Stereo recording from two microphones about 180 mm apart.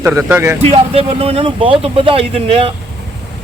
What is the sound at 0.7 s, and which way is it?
Speech, 30° right (ahead or behind).